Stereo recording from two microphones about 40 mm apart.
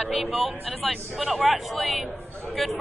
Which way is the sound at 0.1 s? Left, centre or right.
Centre.